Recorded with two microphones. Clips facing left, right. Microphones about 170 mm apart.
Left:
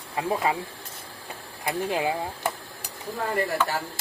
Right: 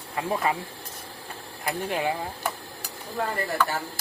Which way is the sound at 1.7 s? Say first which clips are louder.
Left 1 dB; 20° left (ahead or behind).